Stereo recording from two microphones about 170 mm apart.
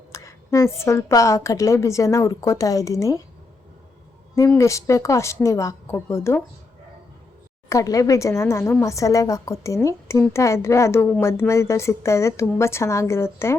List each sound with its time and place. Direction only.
0.1 s a woman's voice: 15° left (ahead or behind)
4.4 s a woman's voice: 15° left (ahead or behind)
7.7 s a woman's voice: 20° left (ahead or behind)